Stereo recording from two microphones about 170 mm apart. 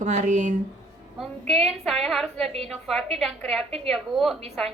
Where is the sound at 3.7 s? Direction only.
40° right (ahead or behind).